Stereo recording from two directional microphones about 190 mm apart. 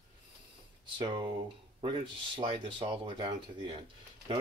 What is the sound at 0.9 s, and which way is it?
Speech, 25° right (ahead or behind).